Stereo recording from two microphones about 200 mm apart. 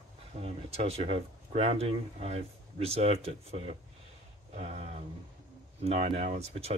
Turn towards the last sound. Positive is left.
turn(degrees=-30)  # may be behind; listen again after turning